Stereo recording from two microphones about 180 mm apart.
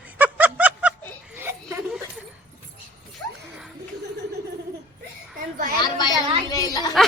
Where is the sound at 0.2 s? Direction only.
10° right (ahead or behind).